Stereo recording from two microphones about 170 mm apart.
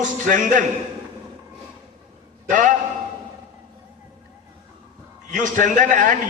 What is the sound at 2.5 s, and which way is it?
Speech, 50° right (ahead or behind).